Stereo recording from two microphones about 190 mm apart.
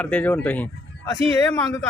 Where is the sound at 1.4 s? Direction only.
15° left (ahead or behind).